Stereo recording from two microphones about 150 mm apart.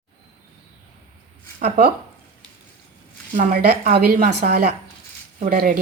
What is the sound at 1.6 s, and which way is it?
Speech, 50° right (ahead or behind).